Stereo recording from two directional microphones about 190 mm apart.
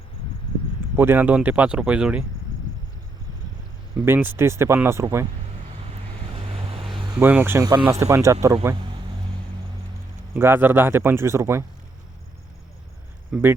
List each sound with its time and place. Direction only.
0.9 s speech: 10° right (ahead or behind)
4.0 s speech: 10° right (ahead or behind)
6.3 s vehicle: 30° right (ahead or behind)
7.2 s speech: 10° right (ahead or behind)
10.3 s speech: 10° right (ahead or behind)
13.3 s speech: 5° right (ahead or behind)